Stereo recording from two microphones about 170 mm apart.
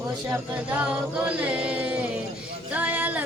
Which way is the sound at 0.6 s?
10° right (ahead or behind).